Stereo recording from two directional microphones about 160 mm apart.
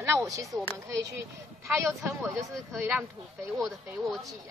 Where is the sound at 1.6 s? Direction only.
15° right (ahead or behind).